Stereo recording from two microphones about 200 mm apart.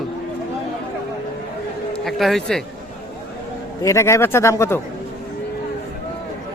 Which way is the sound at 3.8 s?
15° left (ahead or behind).